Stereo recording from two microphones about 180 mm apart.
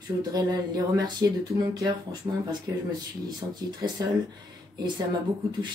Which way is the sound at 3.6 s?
20° right (ahead or behind).